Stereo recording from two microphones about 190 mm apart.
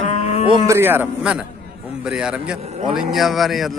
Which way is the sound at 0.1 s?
30° left (ahead or behind).